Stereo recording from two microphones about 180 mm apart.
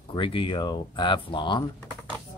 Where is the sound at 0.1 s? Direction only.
30° left (ahead or behind).